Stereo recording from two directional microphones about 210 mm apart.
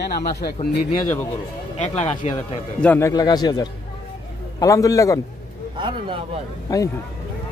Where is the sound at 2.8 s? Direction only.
10° left (ahead or behind).